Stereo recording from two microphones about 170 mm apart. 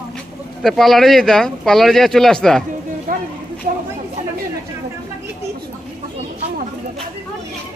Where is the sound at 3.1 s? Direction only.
55° right (ahead or behind).